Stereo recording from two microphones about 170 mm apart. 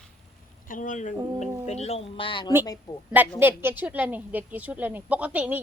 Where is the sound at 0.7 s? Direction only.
50° left (ahead or behind); by 3.0 s 25° left (ahead or behind).